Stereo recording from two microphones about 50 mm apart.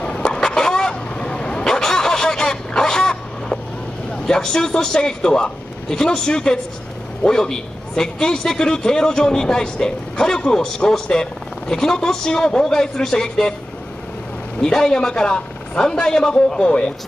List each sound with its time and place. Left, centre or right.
0.0 s fowl: left
4.3 s a man's voice: centre
14.6 s a man's voice: centre